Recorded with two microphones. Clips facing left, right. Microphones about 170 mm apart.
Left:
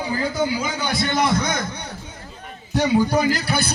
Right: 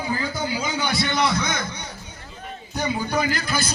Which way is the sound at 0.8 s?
50° left (ahead or behind).